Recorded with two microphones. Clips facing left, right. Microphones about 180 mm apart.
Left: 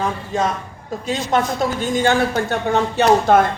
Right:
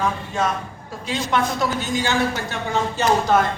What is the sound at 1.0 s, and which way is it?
Speech, 45° left (ahead or behind).